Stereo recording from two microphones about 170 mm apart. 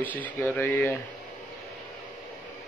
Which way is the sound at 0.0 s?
10° left (ahead or behind).